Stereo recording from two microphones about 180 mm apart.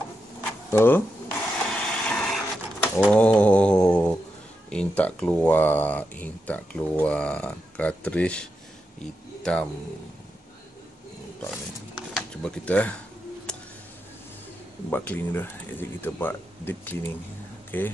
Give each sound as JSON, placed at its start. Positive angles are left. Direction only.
{"t": 0.4, "sound": "a sound", "side_deg": 10}
{"t": 1.7, "sound": "printer", "side_deg": 5}
{"t": 3.1, "sound": "mantra", "side_deg": 5}
{"t": 4.6, "sound": "speech", "side_deg": 5}
{"t": 12.2, "sound": "speech", "side_deg": 5}
{"t": 14.9, "sound": "speech", "side_deg": 10}